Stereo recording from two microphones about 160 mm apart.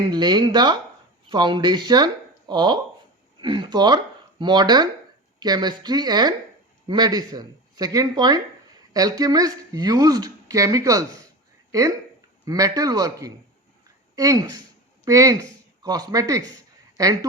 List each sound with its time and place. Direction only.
0.1 s speech: 25° right (ahead or behind)